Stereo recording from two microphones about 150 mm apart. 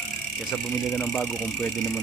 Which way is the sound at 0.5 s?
5° left (ahead or behind).